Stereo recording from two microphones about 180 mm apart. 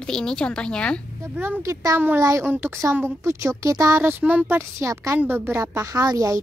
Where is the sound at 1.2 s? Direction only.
10° right (ahead or behind).